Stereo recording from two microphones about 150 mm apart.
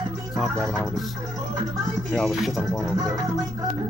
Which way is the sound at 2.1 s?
Centre (ahead or behind).